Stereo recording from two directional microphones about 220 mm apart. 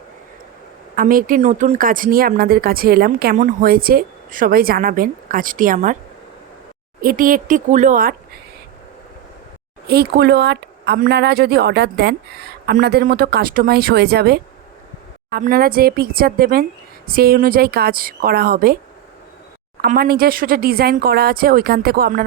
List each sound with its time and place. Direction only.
0.9 s speech: 40° right (ahead or behind)
7.0 s speech: 40° right (ahead or behind)
9.8 s speech: 45° right (ahead or behind)
19.8 s speech: 45° right (ahead or behind)